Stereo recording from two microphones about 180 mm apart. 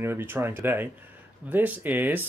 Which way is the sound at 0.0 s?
10° right (ahead or behind).